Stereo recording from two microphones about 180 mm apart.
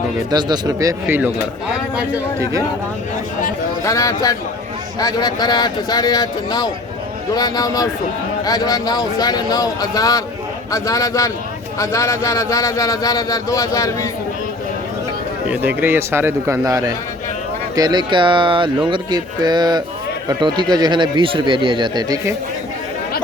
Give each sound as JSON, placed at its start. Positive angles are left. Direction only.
{"t": 0.3, "sound": "speech", "side_deg": -25}
{"t": 2.4, "sound": "speech", "side_deg": -20}
{"t": 3.8, "sound": "speech", "side_deg": 15}
{"t": 15.4, "sound": "a man's voice", "side_deg": -10}